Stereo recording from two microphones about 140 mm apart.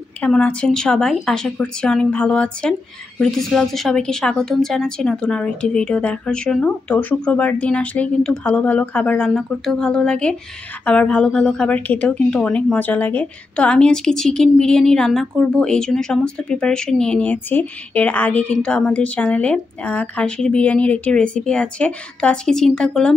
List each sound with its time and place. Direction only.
0.2 s a woman's voice: 10° left (ahead or behind)